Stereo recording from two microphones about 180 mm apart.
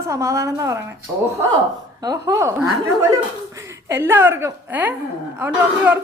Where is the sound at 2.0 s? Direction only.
20° right (ahead or behind).